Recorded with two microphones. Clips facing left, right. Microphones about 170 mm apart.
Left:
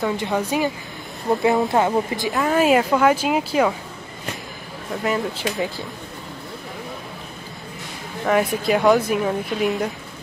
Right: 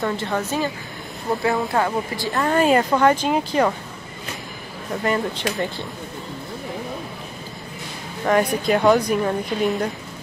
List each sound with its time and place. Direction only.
0.2 s speech: 10° left (ahead or behind)
2.3 s speech: 5° left (ahead or behind)
5.0 s speech: 5° left (ahead or behind)
8.3 s speech: centre (ahead or behind)